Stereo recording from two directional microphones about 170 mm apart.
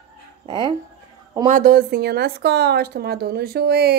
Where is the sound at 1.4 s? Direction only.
45° right (ahead or behind).